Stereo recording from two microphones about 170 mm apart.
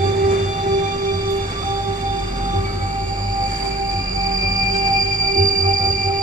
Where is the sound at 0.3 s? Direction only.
50° right (ahead or behind).